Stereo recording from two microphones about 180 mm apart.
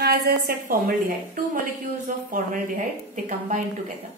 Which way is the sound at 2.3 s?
45° right (ahead or behind).